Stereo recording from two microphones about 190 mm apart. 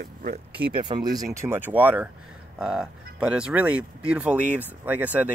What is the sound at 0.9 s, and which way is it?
Speech, 20° right (ahead or behind).